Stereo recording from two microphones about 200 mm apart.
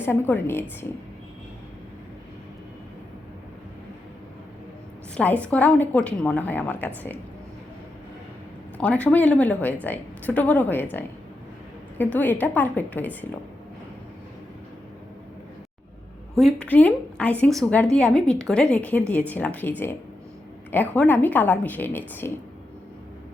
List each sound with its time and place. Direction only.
0.0 s a woman's voice: 10° left (ahead or behind)
5.1 s a woman's voice: 5° left (ahead or behind)
8.8 s a woman's voice: 5° left (ahead or behind)
11.9 s a woman's voice: 10° left (ahead or behind)
16.3 s a woman's voice: 5° left (ahead or behind)
20.9 s a woman's voice: 10° left (ahead or behind)